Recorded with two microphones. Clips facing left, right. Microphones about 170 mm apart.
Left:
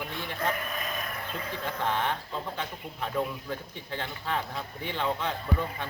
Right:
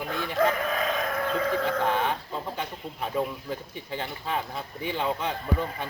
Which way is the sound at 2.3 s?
10° right (ahead or behind).